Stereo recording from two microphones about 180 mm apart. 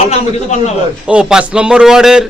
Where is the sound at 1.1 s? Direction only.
5° right (ahead or behind).